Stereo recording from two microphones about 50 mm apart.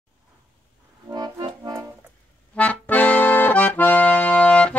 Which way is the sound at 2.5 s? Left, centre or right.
Left.